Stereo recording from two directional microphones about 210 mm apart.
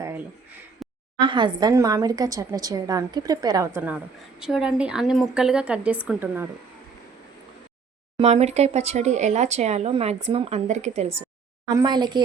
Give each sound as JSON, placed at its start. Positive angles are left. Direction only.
{"t": 1.2, "sound": "a woman's voice", "side_deg": -20}
{"t": 3.8, "sound": "a woman's voice", "side_deg": -5}
{"t": 8.2, "sound": "speech", "side_deg": -30}
{"t": 11.7, "sound": "a woman's voice", "side_deg": -20}